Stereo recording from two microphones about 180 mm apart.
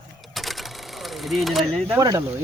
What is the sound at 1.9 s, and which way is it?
Speech, 20° right (ahead or behind).